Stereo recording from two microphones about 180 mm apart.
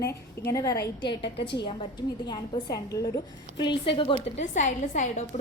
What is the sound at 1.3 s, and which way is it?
Speech, 70° left (ahead or behind).